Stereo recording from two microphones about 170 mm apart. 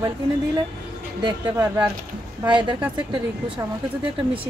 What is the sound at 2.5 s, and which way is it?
Speech, 30° right (ahead or behind).